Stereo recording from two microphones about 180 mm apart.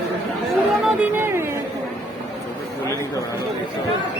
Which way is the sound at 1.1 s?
15° right (ahead or behind).